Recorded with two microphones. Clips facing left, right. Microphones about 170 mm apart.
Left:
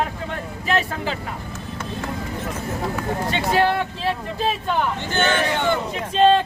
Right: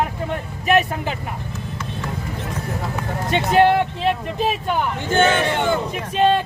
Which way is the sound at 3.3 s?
20° right (ahead or behind).